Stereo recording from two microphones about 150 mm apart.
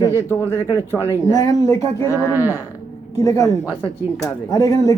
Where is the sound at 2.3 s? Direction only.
15° right (ahead or behind).